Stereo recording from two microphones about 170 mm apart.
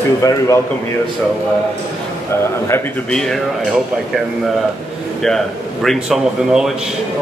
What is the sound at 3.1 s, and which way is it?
Speech, 5° left (ahead or behind).